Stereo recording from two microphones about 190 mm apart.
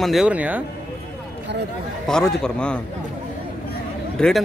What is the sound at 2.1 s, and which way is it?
Speech, 5° left (ahead or behind).